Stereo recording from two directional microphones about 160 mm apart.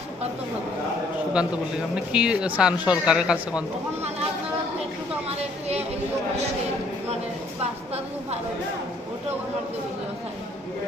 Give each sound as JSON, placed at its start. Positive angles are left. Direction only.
{"t": 2.0, "sound": "speech", "side_deg": -5}
{"t": 5.4, "sound": "a woman's voice", "side_deg": -40}
{"t": 7.6, "sound": "a woman's voice", "side_deg": -40}